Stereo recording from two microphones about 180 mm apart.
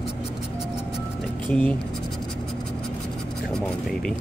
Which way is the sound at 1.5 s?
10° left (ahead or behind).